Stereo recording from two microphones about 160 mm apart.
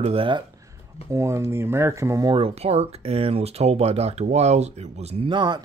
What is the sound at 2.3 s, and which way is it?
Speech, 35° right (ahead or behind).